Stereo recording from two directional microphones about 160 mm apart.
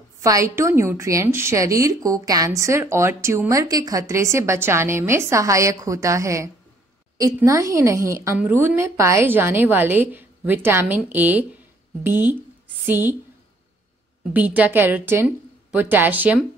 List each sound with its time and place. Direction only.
0.2 s a woman's voice: 20° right (ahead or behind)
14.3 s a woman's voice: 10° right (ahead or behind)